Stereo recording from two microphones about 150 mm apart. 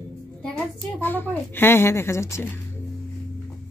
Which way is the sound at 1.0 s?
15° left (ahead or behind).